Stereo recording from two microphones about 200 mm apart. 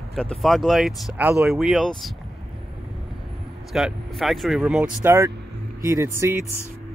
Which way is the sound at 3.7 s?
Centre (ahead or behind).